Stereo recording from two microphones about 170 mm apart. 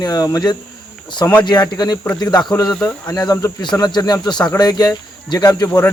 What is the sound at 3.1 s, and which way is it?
Speech, 20° left (ahead or behind).